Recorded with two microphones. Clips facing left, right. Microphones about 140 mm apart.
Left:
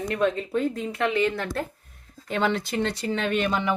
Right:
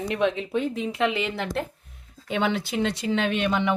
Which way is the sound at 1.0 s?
Centre (ahead or behind).